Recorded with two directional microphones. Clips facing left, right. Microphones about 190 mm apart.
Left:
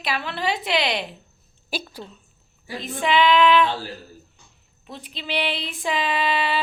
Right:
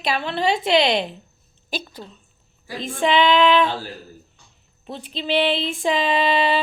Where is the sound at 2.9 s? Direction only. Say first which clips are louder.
Right 2 dB; 25° right (ahead or behind).